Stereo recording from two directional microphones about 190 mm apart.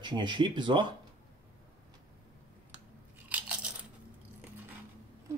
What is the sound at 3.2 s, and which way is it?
Crunch, 5° right (ahead or behind).